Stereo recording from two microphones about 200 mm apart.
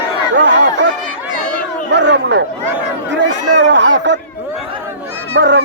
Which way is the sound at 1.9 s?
60° right (ahead or behind).